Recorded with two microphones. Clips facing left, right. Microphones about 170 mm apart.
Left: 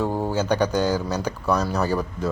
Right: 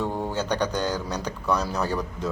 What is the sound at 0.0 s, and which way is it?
Speech, 5° left (ahead or behind).